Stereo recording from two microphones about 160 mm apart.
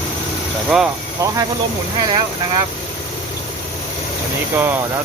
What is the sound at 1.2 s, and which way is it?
Speech, 15° right (ahead or behind).